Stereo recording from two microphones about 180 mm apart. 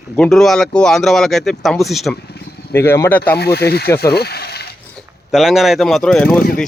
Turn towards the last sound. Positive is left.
turn(degrees=5)  # may be behind; listen again after turning